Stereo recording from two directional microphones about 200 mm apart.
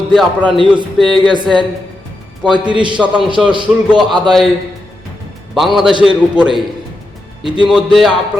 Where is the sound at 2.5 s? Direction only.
25° right (ahead or behind).